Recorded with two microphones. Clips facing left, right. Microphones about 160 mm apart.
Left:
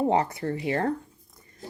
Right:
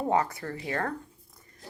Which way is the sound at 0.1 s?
25° left (ahead or behind).